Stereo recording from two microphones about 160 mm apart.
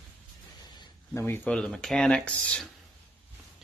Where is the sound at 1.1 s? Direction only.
15° left (ahead or behind).